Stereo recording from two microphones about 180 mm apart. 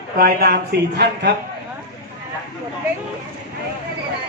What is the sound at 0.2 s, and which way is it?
Speech, 60° right (ahead or behind).